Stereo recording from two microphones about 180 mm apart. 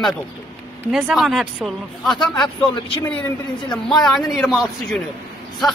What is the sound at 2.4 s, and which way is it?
Speech, 30° left (ahead or behind).